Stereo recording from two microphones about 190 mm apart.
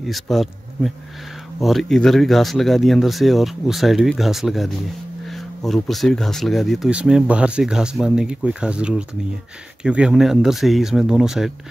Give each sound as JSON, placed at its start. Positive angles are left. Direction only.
{"t": 0.1, "sound": "speech", "side_deg": 0}